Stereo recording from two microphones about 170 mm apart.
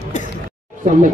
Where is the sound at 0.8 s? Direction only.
50° right (ahead or behind).